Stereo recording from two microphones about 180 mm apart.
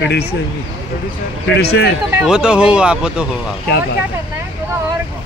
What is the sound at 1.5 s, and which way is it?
Speech, 65° left (ahead or behind).